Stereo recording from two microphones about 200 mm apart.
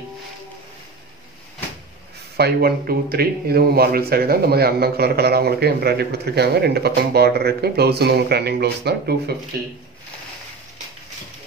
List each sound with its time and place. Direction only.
2.3 s speech: 50° right (ahead or behind)